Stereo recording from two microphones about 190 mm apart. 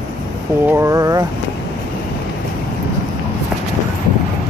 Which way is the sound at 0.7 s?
15° right (ahead or behind).